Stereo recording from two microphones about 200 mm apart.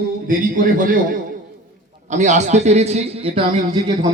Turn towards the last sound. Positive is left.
turn(degrees=-20)  # may be behind; listen again after turning